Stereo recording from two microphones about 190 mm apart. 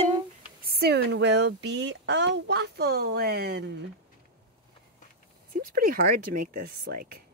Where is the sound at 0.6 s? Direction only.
55° right (ahead or behind).